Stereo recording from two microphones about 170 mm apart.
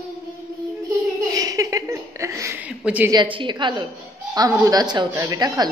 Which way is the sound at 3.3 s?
25° right (ahead or behind).